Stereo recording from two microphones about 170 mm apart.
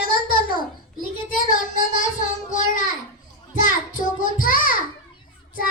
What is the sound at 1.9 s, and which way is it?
Child singing, 50° left (ahead or behind).